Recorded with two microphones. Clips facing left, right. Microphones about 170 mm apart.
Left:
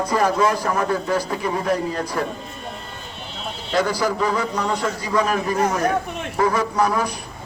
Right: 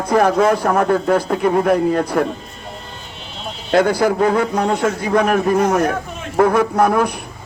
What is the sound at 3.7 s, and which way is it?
A man's voice, 55° right (ahead or behind).